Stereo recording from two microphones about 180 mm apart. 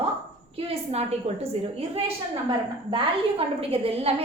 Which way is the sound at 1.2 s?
35° right (ahead or behind).